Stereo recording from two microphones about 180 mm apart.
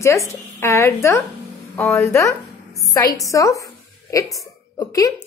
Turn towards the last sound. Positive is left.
turn(degrees=20)  # may be behind; listen again after turning